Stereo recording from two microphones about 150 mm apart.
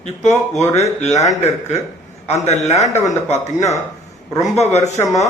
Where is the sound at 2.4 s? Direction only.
50° left (ahead or behind).